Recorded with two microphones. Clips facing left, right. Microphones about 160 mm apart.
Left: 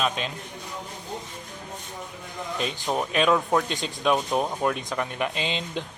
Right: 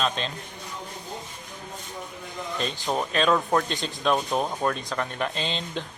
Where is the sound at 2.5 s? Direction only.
15° left (ahead or behind).